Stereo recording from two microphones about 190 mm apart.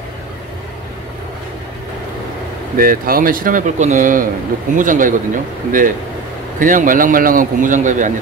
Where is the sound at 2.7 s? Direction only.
50° right (ahead or behind).